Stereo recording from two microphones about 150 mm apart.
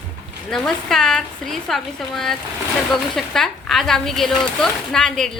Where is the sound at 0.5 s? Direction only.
5° left (ahead or behind).